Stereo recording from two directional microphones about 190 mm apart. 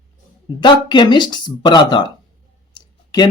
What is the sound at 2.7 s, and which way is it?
Clicking, 25° left (ahead or behind).